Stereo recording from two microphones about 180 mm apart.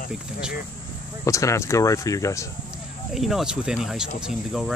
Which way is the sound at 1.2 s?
15° left (ahead or behind).